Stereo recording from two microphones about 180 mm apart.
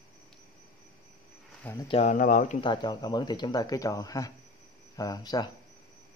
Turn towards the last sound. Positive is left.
turn(degrees=20)  # may be behind; listen again after turning